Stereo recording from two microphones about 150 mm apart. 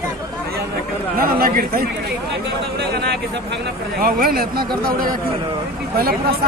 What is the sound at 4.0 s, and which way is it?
Speech, 75° right (ahead or behind).